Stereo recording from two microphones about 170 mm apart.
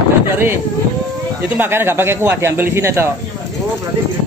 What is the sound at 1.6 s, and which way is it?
Speech, 15° right (ahead or behind).